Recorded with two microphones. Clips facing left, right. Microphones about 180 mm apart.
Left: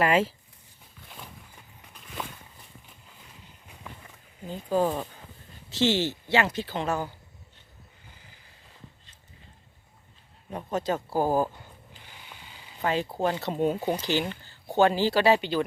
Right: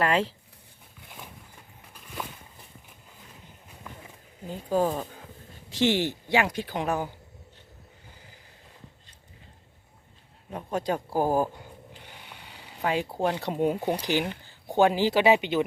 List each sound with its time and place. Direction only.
0.0 s speech: 5° left (ahead or behind)
1.9 s a sound: 5° right (ahead or behind)
4.4 s speech: 5° right (ahead or behind)
5.7 s speech: 15° right (ahead or behind)
10.5 s speech: 10° right (ahead or behind)
12.0 s snoring: 60° right (ahead or behind)
12.8 s speech: 10° right (ahead or behind)